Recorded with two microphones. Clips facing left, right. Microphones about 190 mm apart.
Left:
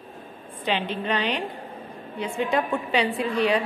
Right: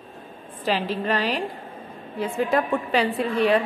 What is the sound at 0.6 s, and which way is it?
Speech, centre (ahead or behind).